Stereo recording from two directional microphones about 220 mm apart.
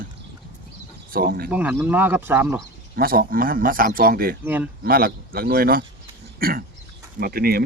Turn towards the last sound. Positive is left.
turn(degrees=-45)  # may be behind; listen again after turning